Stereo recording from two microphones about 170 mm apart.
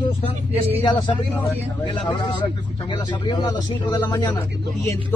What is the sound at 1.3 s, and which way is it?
Speech, 15° left (ahead or behind).